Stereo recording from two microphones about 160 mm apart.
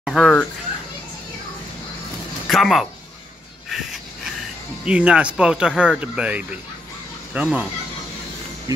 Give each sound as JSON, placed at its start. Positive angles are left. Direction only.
{"t": 0.0, "sound": "speech", "side_deg": 0}
{"t": 2.4, "sound": "speech", "side_deg": 0}
{"t": 4.8, "sound": "speech", "side_deg": -5}
{"t": 8.7, "sound": "speech", "side_deg": -20}